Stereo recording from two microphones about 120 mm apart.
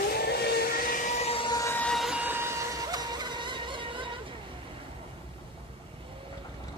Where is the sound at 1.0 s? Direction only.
85° left.